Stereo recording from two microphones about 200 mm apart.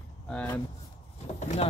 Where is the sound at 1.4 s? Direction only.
35° left (ahead or behind).